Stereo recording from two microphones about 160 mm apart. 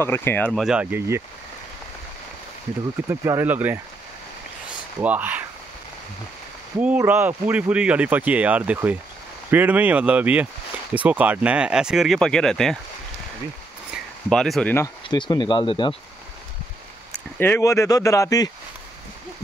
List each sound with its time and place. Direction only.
0.0 s speech: 15° left (ahead or behind)
0.5 s speech: centre (ahead or behind)
3.1 s speech: 15° right (ahead or behind)
5.0 s speech: 10° right (ahead or behind)
6.8 s speech: 10° right (ahead or behind)
14.3 s speech: 5° left (ahead or behind)
15.0 s speech: 30° left (ahead or behind)
17.4 s speech: 15° left (ahead or behind)